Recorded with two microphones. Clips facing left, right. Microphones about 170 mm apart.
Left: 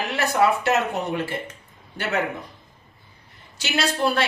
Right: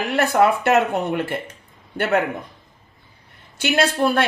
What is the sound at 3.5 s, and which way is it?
Speech, 55° right (ahead or behind).